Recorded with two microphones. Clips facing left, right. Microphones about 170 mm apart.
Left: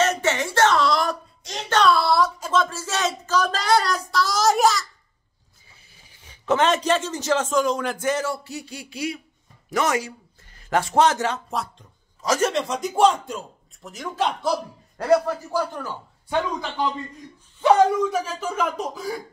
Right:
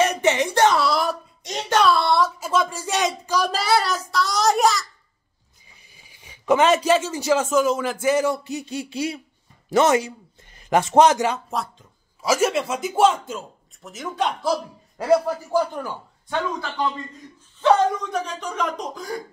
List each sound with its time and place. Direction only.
0.0 s a sound: 15° right (ahead or behind)
1.7 s speech: 5° right (ahead or behind)
5.9 s a man's voice: 10° right (ahead or behind)
15.5 s a man's voice: 15° right (ahead or behind)
17.6 s a man's voice: 10° left (ahead or behind)